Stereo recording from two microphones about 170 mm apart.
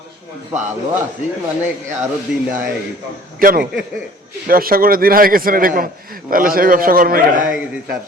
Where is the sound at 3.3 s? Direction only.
55° right (ahead or behind).